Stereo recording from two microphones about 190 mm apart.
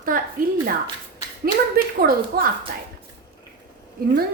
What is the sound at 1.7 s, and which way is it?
Speech, 50° right (ahead or behind).